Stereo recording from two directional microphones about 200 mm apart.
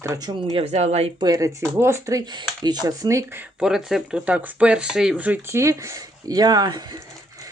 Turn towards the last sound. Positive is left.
turn(degrees=-20)  # may be behind; listen again after turning